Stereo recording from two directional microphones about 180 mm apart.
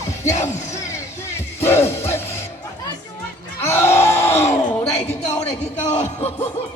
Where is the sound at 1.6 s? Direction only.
15° left (ahead or behind).